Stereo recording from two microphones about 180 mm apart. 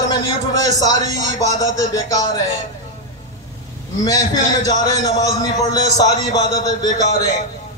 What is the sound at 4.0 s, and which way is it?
A man's voice, 20° left (ahead or behind).